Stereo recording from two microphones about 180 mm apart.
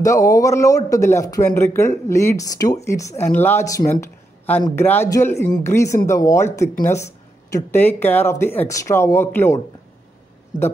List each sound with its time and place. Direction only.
0.0 s speech: 15° left (ahead or behind)